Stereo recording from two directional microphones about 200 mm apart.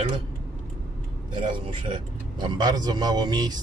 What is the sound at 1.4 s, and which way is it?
A man's voice, 25° right (ahead or behind).